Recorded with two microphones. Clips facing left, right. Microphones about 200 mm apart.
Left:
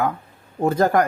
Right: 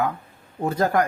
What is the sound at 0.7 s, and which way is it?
Speech, 50° left (ahead or behind).